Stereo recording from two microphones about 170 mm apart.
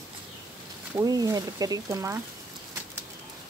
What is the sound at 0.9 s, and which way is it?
A woman's voice, 20° right (ahead or behind).